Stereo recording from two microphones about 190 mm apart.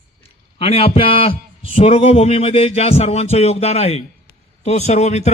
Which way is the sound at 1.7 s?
30° left (ahead or behind).